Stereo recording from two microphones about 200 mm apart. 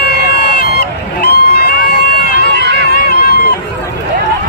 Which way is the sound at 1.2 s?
55° left (ahead or behind).